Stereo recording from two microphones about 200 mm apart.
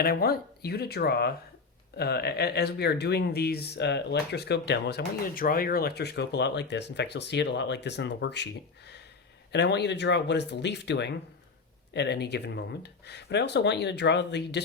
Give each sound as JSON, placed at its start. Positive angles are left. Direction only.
{"t": 0.0, "sound": "speech", "side_deg": 50}
{"t": 9.5, "sound": "speech", "side_deg": 60}